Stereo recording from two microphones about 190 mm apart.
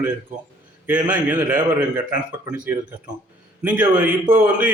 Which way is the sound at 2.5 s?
5° right (ahead or behind).